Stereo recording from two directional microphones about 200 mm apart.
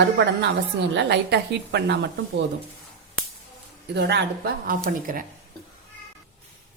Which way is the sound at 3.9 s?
55° right (ahead or behind).